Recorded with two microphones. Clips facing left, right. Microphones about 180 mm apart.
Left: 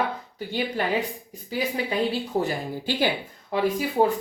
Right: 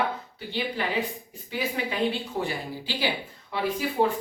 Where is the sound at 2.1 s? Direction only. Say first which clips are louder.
Left 4 dB; 45° left (ahead or behind).